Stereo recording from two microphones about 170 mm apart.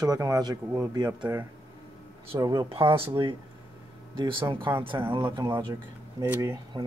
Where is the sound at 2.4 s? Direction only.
20° right (ahead or behind).